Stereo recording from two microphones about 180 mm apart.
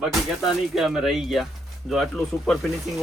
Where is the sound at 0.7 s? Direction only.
Centre (ahead or behind).